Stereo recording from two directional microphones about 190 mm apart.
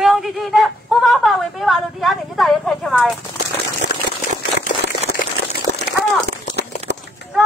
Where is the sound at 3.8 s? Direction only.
60° right (ahead or behind).